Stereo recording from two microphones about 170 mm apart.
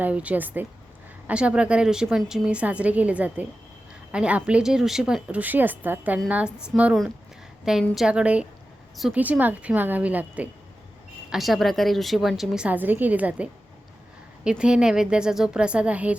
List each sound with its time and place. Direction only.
0.0 s a woman's voice: 10° right (ahead or behind)
14.6 s a woman's voice: 5° right (ahead or behind)